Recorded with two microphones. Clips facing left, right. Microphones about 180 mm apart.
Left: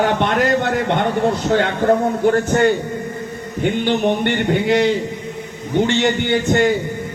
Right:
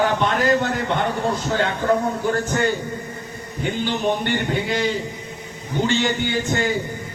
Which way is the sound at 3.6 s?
60° left (ahead or behind).